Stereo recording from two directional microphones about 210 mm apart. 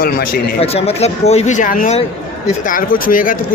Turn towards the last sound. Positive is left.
turn(degrees=40)  # may be behind; listen again after turning